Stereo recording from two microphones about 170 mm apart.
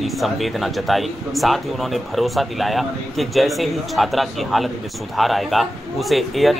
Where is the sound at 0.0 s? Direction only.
Centre (ahead or behind).